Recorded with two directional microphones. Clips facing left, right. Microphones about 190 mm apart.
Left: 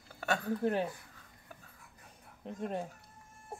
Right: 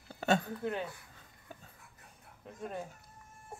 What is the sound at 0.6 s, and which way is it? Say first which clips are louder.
Speech: left 5 dB; 35° left (ahead or behind).